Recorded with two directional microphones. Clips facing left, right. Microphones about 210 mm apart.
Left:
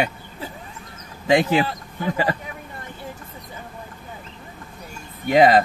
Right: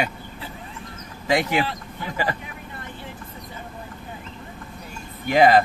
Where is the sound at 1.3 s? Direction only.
30° left (ahead or behind).